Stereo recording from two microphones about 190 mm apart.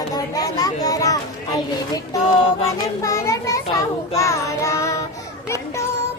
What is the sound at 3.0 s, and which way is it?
Children playing, 15° left (ahead or behind).